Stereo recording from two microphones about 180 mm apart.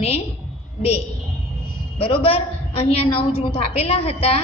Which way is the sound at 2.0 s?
30° left (ahead or behind).